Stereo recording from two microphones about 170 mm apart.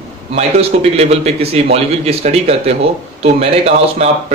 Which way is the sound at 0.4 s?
35° right (ahead or behind).